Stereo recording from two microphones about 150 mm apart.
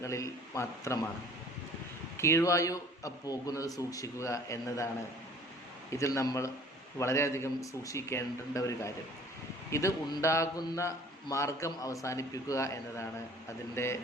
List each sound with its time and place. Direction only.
0.0 s a man's voice: 20° left (ahead or behind)
2.1 s a man's voice: 20° left (ahead or behind)
5.9 s a man's voice: 20° left (ahead or behind)